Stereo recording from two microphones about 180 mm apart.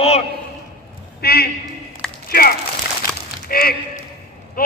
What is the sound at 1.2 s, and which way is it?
A man's voice, 60° left (ahead or behind).